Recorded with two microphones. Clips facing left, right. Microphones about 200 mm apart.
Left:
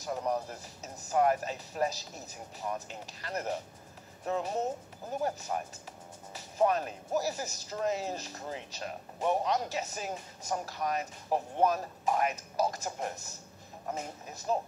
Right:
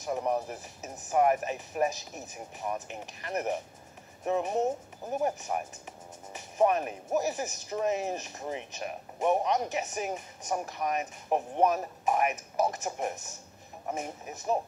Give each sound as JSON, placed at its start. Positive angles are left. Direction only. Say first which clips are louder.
{"t": 0.0, "sound": "speech", "louder": "right 3 dB", "side_deg": -15}